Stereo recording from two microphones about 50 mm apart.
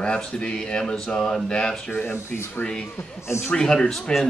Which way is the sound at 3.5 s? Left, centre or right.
Centre.